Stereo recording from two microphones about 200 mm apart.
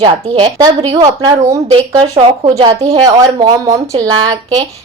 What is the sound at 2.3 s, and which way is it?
Speech, 30° right (ahead or behind).